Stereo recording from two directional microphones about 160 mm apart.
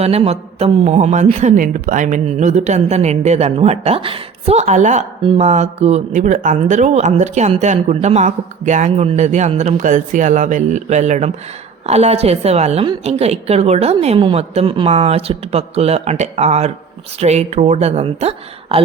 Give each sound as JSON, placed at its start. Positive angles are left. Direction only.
{"t": 0.0, "sound": "a woman's voice", "side_deg": -40}